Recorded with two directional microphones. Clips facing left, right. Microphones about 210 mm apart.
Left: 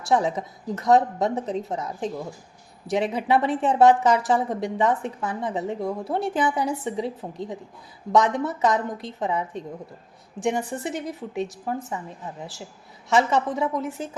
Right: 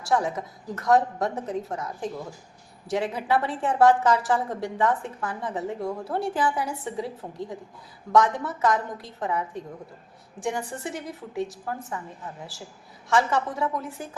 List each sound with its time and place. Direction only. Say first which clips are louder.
0.1 s a woman's voice: left 3 dB; 20° left (ahead or behind)
13.1 s a woman's voice: left 3 dB; 20° left (ahead or behind)